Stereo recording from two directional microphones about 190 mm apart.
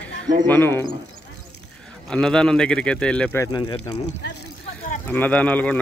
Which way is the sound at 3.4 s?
20° left (ahead or behind).